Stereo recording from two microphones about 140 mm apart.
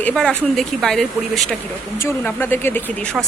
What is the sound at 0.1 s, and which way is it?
Speech, 5° left (ahead or behind).